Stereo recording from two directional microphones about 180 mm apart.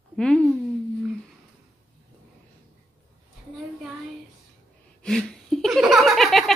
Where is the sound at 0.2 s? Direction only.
5° left (ahead or behind).